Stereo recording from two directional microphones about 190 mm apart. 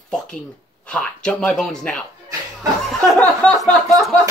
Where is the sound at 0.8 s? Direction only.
5° left (ahead or behind).